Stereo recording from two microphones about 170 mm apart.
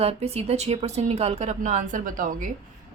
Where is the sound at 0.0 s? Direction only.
35° right (ahead or behind).